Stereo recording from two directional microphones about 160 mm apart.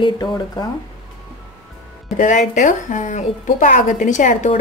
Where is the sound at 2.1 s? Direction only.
50° left (ahead or behind).